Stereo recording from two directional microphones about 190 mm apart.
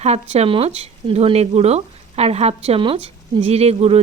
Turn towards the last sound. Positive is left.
turn(degrees=-35)  # may be behind; listen again after turning